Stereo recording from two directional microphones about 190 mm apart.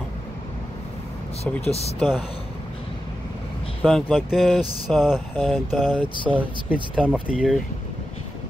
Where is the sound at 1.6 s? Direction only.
35° left (ahead or behind).